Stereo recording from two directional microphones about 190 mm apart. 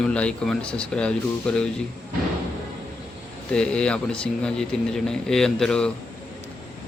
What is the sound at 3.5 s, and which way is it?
Speech, 5° left (ahead or behind).